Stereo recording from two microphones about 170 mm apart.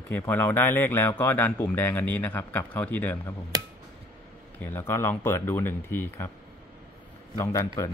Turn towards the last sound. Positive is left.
turn(degrees=20)  # may be behind; listen again after turning